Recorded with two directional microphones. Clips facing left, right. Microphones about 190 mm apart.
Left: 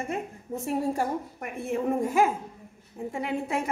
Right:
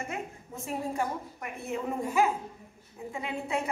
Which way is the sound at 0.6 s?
40° left (ahead or behind).